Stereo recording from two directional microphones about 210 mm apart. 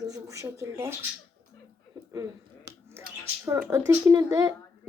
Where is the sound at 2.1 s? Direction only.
15° right (ahead or behind).